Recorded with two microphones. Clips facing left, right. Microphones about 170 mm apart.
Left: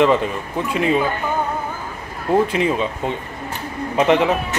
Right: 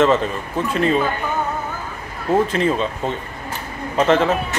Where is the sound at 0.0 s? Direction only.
15° left (ahead or behind).